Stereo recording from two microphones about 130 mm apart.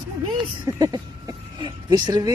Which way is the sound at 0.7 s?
30° right (ahead or behind).